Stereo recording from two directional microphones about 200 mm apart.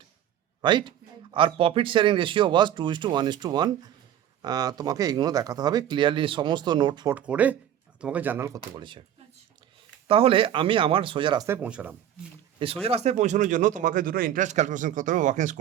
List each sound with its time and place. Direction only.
0.6 s speech: 25° right (ahead or behind)
7.1 s speech: 5° right (ahead or behind)
8.7 s speech: 25° right (ahead or behind)
10.1 s speech: 30° right (ahead or behind)
11.4 s speech: 10° right (ahead or behind)
12.5 s speech: 30° right (ahead or behind)